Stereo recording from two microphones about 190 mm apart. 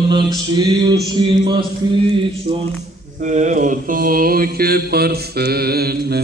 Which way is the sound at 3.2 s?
40° right (ahead or behind).